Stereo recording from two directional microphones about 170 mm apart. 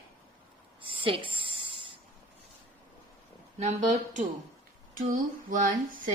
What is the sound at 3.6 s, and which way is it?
Speech, 40° right (ahead or behind).